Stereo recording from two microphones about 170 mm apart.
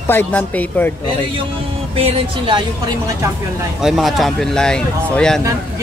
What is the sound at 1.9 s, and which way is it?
Speech, 35° right (ahead or behind).